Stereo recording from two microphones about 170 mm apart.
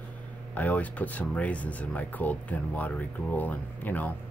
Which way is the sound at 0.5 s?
10° left (ahead or behind).